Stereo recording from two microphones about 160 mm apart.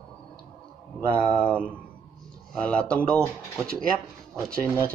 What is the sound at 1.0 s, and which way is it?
Speech, 10° left (ahead or behind).